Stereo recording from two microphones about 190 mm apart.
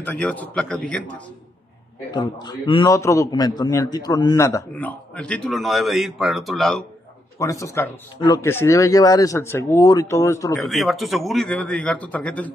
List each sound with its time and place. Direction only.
0.0 s a man's voice: 10° left (ahead or behind)
2.0 s a man's voice: 20° left (ahead or behind); by 6.8 s centre (ahead or behind)
7.3 s a man's voice: 15° left (ahead or behind)
10.7 s speech: centre (ahead or behind)